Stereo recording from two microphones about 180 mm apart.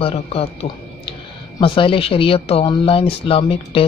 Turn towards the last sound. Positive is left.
turn(degrees=30)  # may be behind; listen again after turning